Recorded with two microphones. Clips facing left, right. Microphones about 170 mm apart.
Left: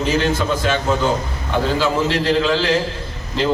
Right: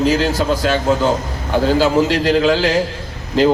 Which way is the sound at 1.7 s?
40° right (ahead or behind).